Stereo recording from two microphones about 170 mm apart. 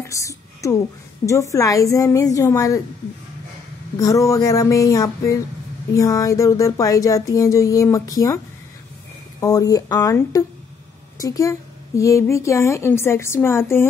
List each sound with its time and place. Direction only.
0.0 s a sound: 20° left (ahead or behind)
1.2 s speech: 20° left (ahead or behind)
4.0 s speech: 20° left (ahead or behind)
9.4 s a woman's voice: 20° left (ahead or behind)